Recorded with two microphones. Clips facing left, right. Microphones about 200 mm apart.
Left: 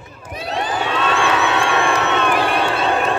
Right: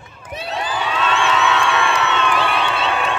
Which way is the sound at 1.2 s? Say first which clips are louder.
Even; 55° left (ahead or behind).